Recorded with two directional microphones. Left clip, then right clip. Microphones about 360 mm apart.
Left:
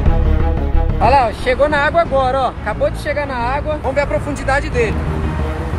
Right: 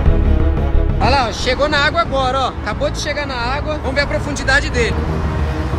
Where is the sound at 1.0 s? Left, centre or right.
Centre.